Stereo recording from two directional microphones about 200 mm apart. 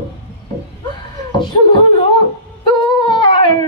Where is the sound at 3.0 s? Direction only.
25° left (ahead or behind).